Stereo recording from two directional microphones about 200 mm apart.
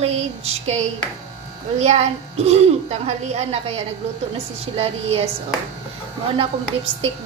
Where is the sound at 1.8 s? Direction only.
35° right (ahead or behind).